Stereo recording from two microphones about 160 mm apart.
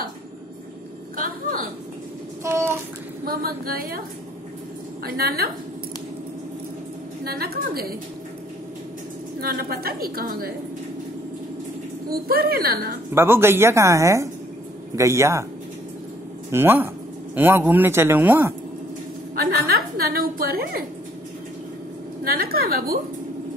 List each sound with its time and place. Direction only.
2.4 s a sound: 15° right (ahead or behind)
3.3 s a woman's voice: 70° right (ahead or behind)
5.0 s a woman's voice: 70° right (ahead or behind)
7.2 s a woman's voice: 70° right (ahead or behind)
9.4 s a woman's voice: 70° right (ahead or behind)
12.1 s a woman's voice: 70° right (ahead or behind)
13.1 s speech: 15° right (ahead or behind)
16.5 s speech: 10° right (ahead or behind)
19.3 s a woman's voice: 70° right (ahead or behind)
22.2 s a woman's voice: 70° right (ahead or behind)